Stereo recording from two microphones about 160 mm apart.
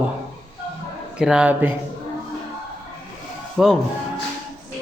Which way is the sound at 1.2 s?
5° right (ahead or behind).